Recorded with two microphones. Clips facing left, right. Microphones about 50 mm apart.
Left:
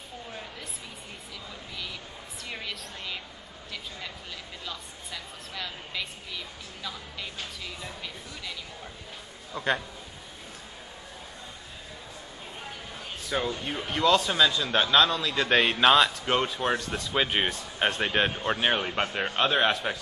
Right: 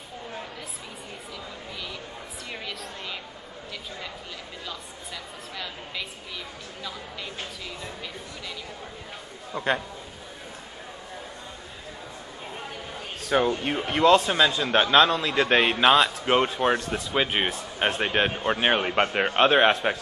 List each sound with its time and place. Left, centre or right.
2.5 s music: centre
4.6 s a sound: centre
9.5 s a man's voice: centre
13.2 s speech: right
13.7 s a man's voice: right
15.5 s speech: centre
16.4 s a man's voice: right
16.9 s speech: centre
18.6 s a man's voice: right